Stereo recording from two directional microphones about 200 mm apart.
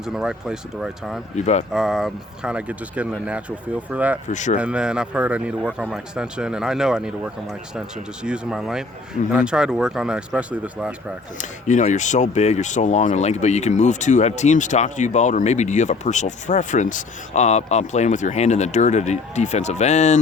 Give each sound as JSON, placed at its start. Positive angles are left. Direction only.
{"t": 0.0, "sound": "speech", "side_deg": -5}
{"t": 1.4, "sound": "speech", "side_deg": 35}
{"t": 1.7, "sound": "speech", "side_deg": -5}
{"t": 4.3, "sound": "speech", "side_deg": 35}
{"t": 4.5, "sound": "speech", "side_deg": -5}
{"t": 11.3, "sound": "speech", "side_deg": 40}